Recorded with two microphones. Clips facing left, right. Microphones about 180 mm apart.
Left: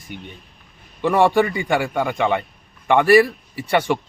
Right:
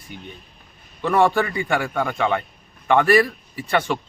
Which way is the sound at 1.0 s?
15° left (ahead or behind).